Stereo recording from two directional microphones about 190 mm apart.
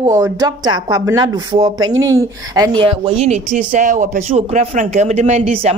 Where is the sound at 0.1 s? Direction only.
15° right (ahead or behind).